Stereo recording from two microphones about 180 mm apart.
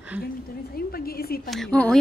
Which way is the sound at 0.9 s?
55° left (ahead or behind).